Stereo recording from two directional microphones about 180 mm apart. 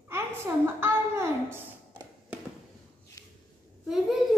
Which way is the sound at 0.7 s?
15° right (ahead or behind).